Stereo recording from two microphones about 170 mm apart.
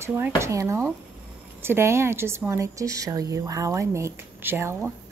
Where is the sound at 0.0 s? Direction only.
10° right (ahead or behind).